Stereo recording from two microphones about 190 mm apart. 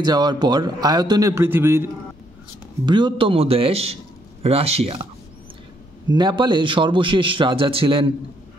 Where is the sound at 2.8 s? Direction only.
25° right (ahead or behind).